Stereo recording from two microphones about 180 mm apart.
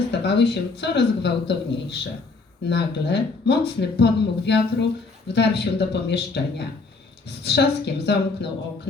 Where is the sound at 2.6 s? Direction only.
70° left (ahead or behind).